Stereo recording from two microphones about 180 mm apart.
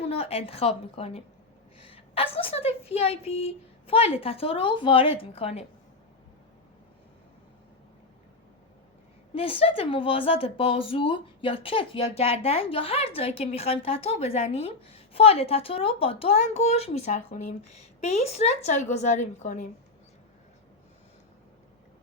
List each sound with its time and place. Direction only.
0.0 s a woman's voice: 35° left (ahead or behind)
9.3 s a woman's voice: 30° left (ahead or behind)